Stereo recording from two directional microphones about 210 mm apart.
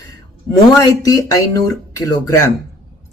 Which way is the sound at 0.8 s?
15° left (ahead or behind).